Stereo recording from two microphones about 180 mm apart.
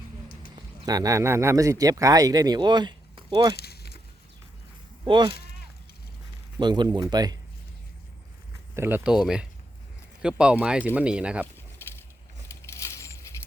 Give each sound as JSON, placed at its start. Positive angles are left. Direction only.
{"t": 0.9, "sound": "speech", "side_deg": -20}
{"t": 3.5, "sound": "a sound", "side_deg": 60}
{"t": 5.0, "sound": "speech", "side_deg": -25}
{"t": 6.6, "sound": "speech", "side_deg": -25}
{"t": 8.7, "sound": "speech", "side_deg": -10}
{"t": 12.5, "sound": "a sound", "side_deg": 15}